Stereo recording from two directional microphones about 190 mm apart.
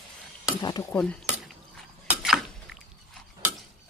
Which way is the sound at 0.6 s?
20° left (ahead or behind).